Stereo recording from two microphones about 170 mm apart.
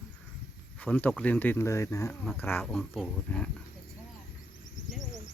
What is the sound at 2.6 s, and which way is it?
Speech, centre (ahead or behind).